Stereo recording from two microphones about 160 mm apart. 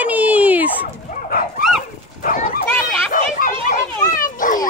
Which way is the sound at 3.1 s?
55° left (ahead or behind).